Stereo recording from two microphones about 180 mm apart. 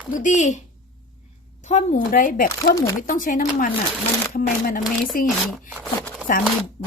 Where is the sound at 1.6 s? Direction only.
40° left (ahead or behind).